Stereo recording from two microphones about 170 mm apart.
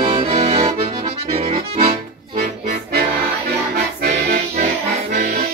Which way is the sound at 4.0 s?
70° right (ahead or behind).